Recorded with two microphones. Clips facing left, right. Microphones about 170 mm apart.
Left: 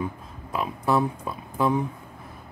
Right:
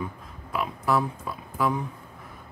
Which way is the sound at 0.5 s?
25° left (ahead or behind).